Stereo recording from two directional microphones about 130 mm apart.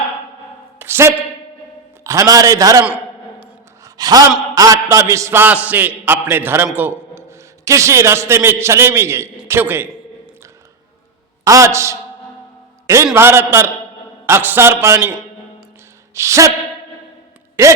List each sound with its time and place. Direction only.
0.8 s a sound: 20° right (ahead or behind)
2.0 s a man's voice: 25° right (ahead or behind)
3.8 s sigh: 30° right (ahead or behind)
4.5 s a man's voice: 25° right (ahead or behind)
11.4 s a man's voice: 25° right (ahead or behind)
13.1 s a man's voice: 20° right (ahead or behind)
16.1 s a man's voice: 25° right (ahead or behind)
17.6 s a man's voice: 20° right (ahead or behind)